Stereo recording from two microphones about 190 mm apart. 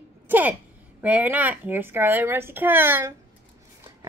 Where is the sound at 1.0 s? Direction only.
10° right (ahead or behind).